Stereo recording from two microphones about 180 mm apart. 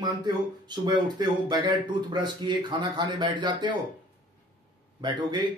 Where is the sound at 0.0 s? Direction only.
25° right (ahead or behind).